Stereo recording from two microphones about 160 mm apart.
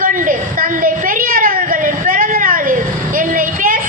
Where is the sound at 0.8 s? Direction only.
60° right (ahead or behind).